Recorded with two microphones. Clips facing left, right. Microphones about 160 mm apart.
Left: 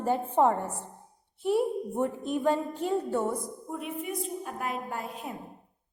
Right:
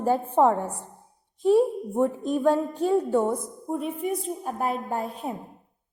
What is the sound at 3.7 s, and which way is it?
A woman's voice, 35° right (ahead or behind).